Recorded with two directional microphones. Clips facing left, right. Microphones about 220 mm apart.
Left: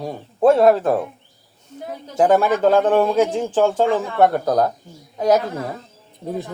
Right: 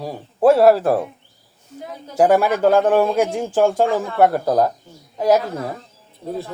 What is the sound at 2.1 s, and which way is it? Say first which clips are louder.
A woman's voice: right 1 dB; 10° right (ahead or behind).